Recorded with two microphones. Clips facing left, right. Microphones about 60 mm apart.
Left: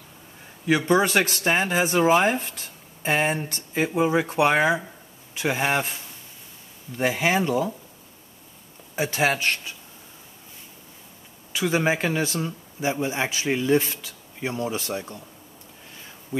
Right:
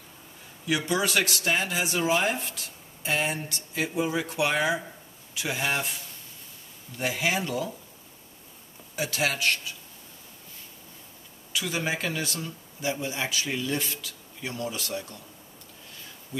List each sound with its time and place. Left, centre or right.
0.7 s speech: left
7.0 s speech: left
8.9 s speech: left
11.5 s speech: left